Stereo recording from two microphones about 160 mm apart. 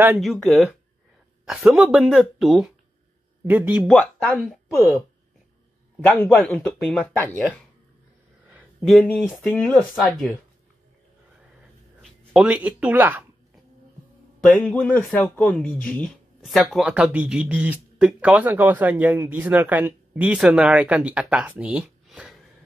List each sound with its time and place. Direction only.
0.2 s speech: centre (ahead or behind)
3.8 s speech: 5° left (ahead or behind)
6.0 s speech: 10° left (ahead or behind)
8.8 s speech: 5° left (ahead or behind)
12.0 s a sound: centre (ahead or behind)
12.4 s speech: 10° right (ahead or behind)
14.4 s speech: 5° left (ahead or behind)
16.5 s speech: 5° right (ahead or behind)